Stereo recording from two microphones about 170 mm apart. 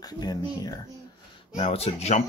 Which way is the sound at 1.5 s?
35° left (ahead or behind).